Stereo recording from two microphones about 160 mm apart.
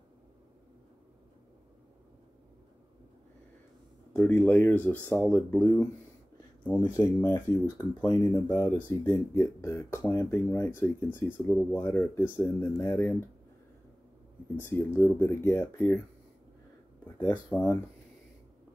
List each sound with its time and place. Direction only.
4.1 s speech: 10° left (ahead or behind)
6.8 s speech: 20° left (ahead or behind)
14.6 s speech: 15° left (ahead or behind)
17.3 s speech: 10° left (ahead or behind)